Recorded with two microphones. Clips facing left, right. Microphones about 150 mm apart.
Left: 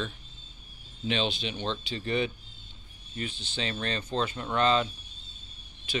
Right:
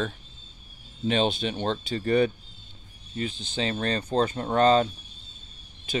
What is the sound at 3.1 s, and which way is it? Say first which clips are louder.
Speech: right 5 dB; 35° right (ahead or behind).